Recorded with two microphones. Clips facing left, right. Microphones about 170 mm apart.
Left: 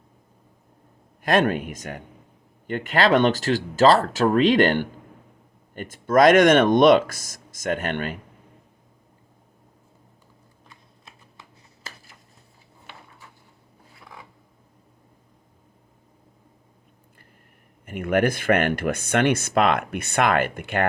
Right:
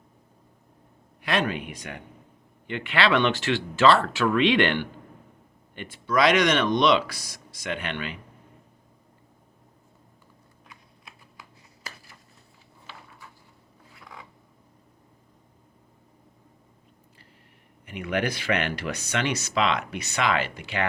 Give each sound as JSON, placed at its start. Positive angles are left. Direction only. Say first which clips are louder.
{"t": 1.2, "sound": "speech", "louder": "left 6 dB", "side_deg": 50}
{"t": 17.8, "sound": "speech", "louder": "left 6 dB", "side_deg": 50}